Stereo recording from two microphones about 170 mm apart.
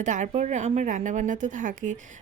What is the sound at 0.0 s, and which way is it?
A woman's voice, 45° right (ahead or behind).